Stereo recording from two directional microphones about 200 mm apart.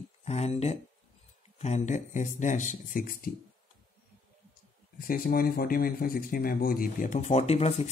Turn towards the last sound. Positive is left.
turn(degrees=30)  # may be behind; listen again after turning